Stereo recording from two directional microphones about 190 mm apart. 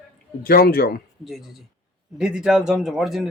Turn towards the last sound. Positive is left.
turn(degrees=0)  # may be behind; listen again after turning